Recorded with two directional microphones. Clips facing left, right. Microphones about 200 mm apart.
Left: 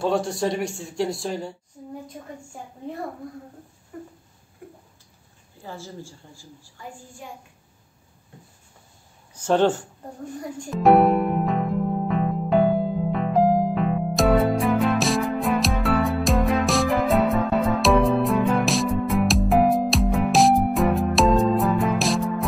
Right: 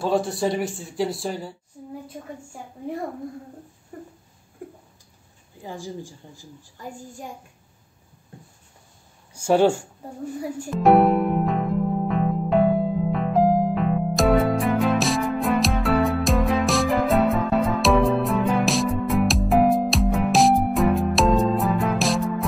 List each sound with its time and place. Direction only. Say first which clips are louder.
0.0 s speech: right 1 dB; centre (ahead or behind)
3.9 s a sound: left 1 dB; 40° right (ahead or behind)
5.6 s a woman's voice: right 3 dB; 15° right (ahead or behind)
9.3 s a woman's voice: right 2 dB; 10° right (ahead or behind)
10.6 s music: even; centre (ahead or behind)